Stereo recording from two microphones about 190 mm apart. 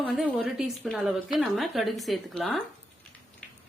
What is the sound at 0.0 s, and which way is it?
Speech, centre (ahead or behind).